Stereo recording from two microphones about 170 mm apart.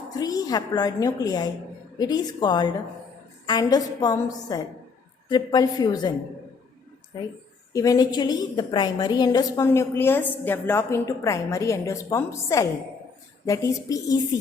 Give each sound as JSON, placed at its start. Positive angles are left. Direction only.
{"t": 0.1, "sound": "a woman's voice", "side_deg": 20}
{"t": 7.7, "sound": "a woman's voice", "side_deg": 20}